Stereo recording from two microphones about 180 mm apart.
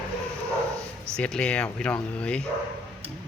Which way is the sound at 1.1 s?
5° left (ahead or behind).